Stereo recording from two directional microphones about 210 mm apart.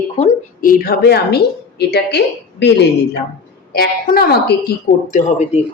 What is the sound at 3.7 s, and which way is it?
Speech, 45° left (ahead or behind).